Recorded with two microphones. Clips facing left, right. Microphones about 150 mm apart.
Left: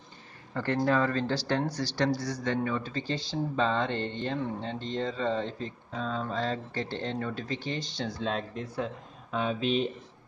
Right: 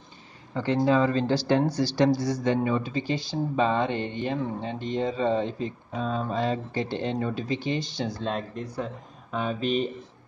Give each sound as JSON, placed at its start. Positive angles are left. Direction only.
{"t": 0.6, "sound": "speech", "side_deg": -15}
{"t": 8.2, "sound": "speech", "side_deg": 0}